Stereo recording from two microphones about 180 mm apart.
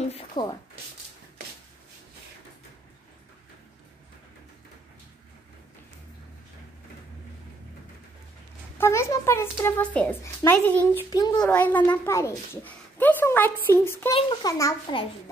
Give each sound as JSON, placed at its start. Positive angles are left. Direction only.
{"t": 0.4, "sound": "a child's voice", "side_deg": 25}
{"t": 8.7, "sound": "a child's voice", "side_deg": 15}
{"t": 11.1, "sound": "a child's voice", "side_deg": 20}
{"t": 11.3, "sound": "a child's voice", "side_deg": 10}